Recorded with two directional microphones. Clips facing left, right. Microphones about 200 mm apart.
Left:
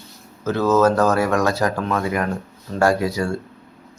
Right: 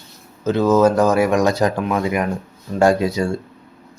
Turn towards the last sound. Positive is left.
turn(degrees=-20)  # may be behind; listen again after turning